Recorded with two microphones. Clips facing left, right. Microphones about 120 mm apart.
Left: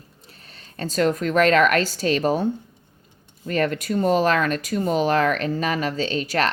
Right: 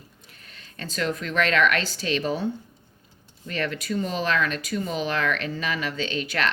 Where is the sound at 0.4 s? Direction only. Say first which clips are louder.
Left 7 dB; 35° left (ahead or behind).